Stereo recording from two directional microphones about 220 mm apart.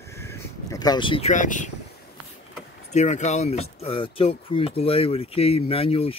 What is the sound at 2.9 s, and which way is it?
Speech, 30° left (ahead or behind).